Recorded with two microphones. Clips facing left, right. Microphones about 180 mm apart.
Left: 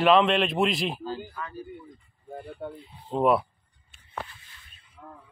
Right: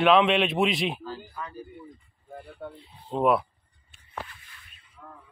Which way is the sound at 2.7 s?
Centre (ahead or behind).